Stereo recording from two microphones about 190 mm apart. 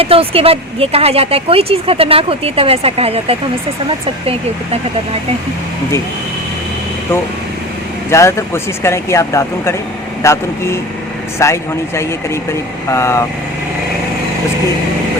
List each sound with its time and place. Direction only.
0.0 s speech: 30° right (ahead or behind)
8.1 s speech: 15° left (ahead or behind)